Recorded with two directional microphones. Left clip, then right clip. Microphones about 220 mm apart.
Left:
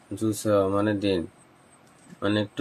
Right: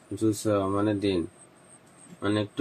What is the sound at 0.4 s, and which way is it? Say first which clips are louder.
Speech: left 6 dB; 20° left (ahead or behind).